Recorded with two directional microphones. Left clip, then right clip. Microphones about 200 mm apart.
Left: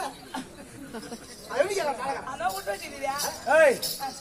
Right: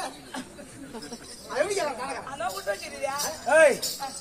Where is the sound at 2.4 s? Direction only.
25° right (ahead or behind).